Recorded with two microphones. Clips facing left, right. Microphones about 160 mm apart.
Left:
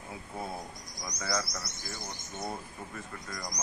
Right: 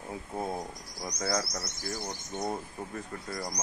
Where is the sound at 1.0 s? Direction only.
30° right (ahead or behind).